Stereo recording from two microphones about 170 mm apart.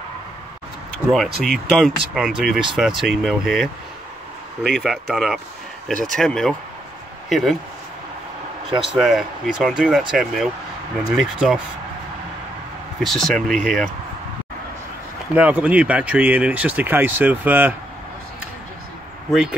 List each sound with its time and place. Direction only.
1.1 s speech: centre (ahead or behind)
8.7 s speech: centre (ahead or behind)
13.0 s speech: centre (ahead or behind)
15.3 s speech: 10° right (ahead or behind)